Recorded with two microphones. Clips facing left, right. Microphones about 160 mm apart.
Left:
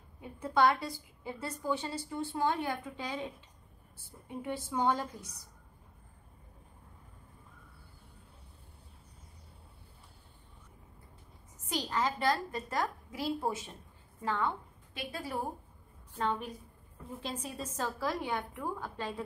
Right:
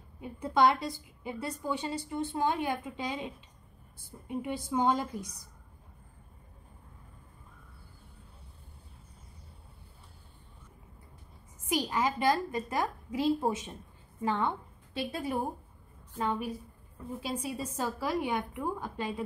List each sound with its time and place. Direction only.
0.2 s a woman's voice: 20° right (ahead or behind)
11.7 s a woman's voice: 10° right (ahead or behind)
16.2 s a woman's voice: 10° right (ahead or behind)